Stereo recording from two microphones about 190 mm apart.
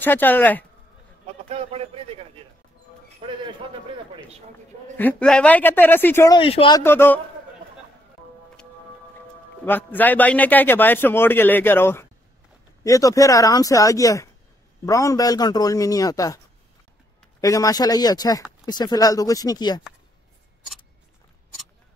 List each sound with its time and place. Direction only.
0.0 s a man's voice: 10° left (ahead or behind)
1.5 s a man's voice: 30° right (ahead or behind)
4.9 s a man's voice: 5° left (ahead or behind)
6.3 s a man's voice: 25° left (ahead or behind)
6.8 s a man's voice: 10° left (ahead or behind)
9.7 s a man's voice: 10° left (ahead or behind)
17.4 s a man's voice: 20° left (ahead or behind)